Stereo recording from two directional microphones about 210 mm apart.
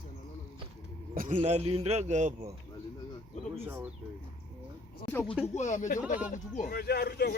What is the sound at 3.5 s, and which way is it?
Speech, 10° right (ahead or behind).